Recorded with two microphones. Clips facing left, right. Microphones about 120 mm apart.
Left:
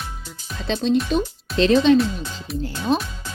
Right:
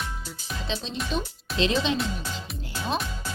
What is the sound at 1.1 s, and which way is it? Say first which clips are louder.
Speech: left 8 dB; 50° left (ahead or behind).